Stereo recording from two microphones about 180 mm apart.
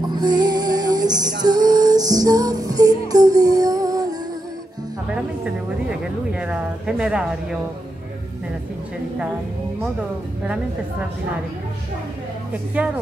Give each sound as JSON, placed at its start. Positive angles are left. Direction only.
{"t": 0.0, "sound": "music", "side_deg": -25}
{"t": 5.1, "sound": "speech", "side_deg": -5}
{"t": 10.4, "sound": "a woman's voice", "side_deg": -5}
{"t": 12.8, "sound": "a woman's voice", "side_deg": -10}